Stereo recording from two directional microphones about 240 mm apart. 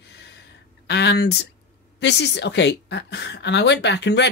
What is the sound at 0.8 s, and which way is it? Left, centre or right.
A woman's voice, left.